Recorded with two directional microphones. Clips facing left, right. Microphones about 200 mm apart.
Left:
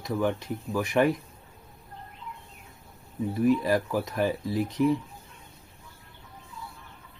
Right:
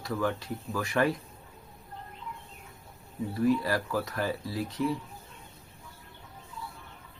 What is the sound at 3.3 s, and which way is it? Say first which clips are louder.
Speech: left 3 dB; 20° left (ahead or behind).